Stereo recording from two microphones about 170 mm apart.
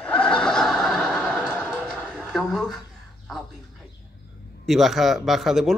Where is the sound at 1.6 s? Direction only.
10° right (ahead or behind).